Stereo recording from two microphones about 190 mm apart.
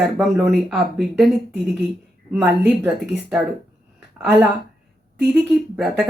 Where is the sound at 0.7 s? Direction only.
Centre (ahead or behind).